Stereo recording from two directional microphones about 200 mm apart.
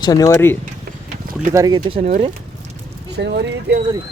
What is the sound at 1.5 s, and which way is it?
Speech, 15° right (ahead or behind).